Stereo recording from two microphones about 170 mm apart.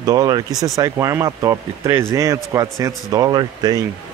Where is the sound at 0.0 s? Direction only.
20° right (ahead or behind).